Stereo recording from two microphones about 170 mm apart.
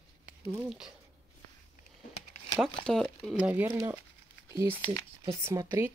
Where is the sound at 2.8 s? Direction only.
Centre (ahead or behind); by 5.9 s 20° right (ahead or behind).